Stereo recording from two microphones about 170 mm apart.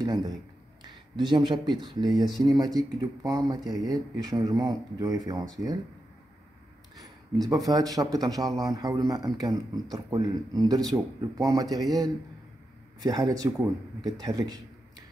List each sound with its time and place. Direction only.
0.8 s a man's voice: 25° right (ahead or behind)
7.0 s a man's voice: 20° right (ahead or behind)
13.0 s a man's voice: 20° right (ahead or behind)